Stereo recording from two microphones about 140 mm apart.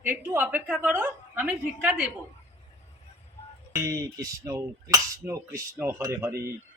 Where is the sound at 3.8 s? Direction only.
25° right (ahead or behind).